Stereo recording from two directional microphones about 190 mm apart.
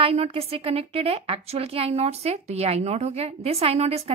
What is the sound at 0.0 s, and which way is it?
A woman's voice, 30° right (ahead or behind).